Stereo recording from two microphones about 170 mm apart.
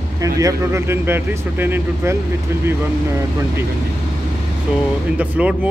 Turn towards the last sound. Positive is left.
turn(degrees=-5)  # may be behind; listen again after turning